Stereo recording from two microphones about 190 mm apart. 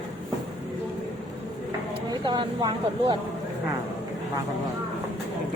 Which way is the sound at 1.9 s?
25° right (ahead or behind).